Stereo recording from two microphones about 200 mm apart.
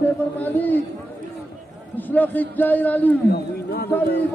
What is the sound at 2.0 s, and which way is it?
A man's voice, 10° left (ahead or behind).